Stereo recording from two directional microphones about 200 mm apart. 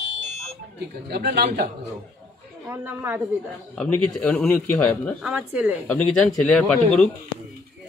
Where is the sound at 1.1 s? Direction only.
50° right (ahead or behind).